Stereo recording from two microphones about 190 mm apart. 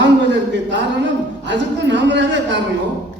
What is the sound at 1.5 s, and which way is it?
A man's voice, 70° right (ahead or behind).